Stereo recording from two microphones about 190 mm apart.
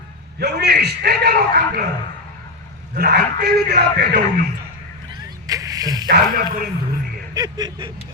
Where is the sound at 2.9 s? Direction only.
55° right (ahead or behind).